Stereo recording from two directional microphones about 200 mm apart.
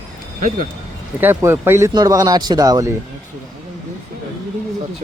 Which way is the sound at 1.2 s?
10° right (ahead or behind).